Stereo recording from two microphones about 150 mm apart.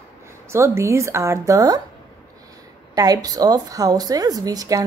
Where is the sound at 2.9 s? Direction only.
25° right (ahead or behind).